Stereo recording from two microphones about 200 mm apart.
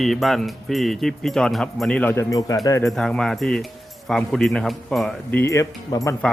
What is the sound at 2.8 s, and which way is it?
Speech, centre (ahead or behind).